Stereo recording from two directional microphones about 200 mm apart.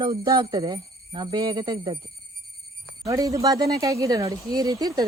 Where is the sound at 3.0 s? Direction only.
15° right (ahead or behind).